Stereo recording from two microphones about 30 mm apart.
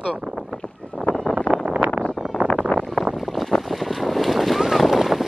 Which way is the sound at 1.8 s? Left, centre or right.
Right.